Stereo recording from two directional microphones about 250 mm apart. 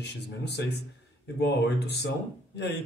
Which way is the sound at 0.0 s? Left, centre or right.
Left.